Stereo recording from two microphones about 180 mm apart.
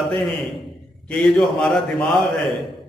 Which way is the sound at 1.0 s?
5° left (ahead or behind).